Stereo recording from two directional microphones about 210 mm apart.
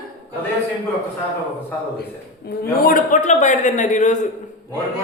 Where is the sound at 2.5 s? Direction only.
50° left (ahead or behind).